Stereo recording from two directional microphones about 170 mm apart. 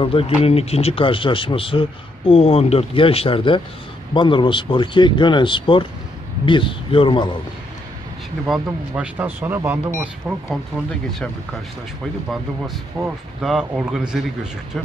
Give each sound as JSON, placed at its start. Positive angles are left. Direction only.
{"t": 0.0, "sound": "speech", "side_deg": 35}
{"t": 8.5, "sound": "speech", "side_deg": -10}
{"t": 13.0, "sound": "speech", "side_deg": -25}
{"t": 13.4, "sound": "a man's voice", "side_deg": -5}